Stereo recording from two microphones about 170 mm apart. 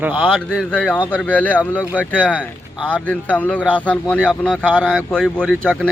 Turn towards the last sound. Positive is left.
turn(degrees=5)  # may be behind; listen again after turning